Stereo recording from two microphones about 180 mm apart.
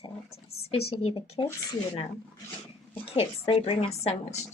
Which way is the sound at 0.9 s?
35° left (ahead or behind).